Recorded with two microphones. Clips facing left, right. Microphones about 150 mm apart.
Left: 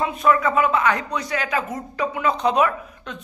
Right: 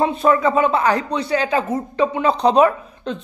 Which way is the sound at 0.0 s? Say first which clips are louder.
Right 3 dB; 30° right (ahead or behind).